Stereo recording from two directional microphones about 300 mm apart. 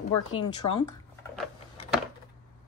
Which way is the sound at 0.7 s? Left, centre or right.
Centre.